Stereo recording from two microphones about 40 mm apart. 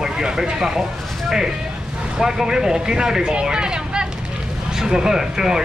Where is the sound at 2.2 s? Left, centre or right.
Centre.